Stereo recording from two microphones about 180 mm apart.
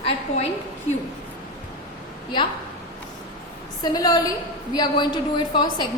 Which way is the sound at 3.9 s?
20° left (ahead or behind).